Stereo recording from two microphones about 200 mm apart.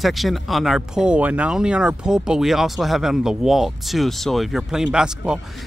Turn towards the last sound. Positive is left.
turn(degrees=-5)  # may be behind; listen again after turning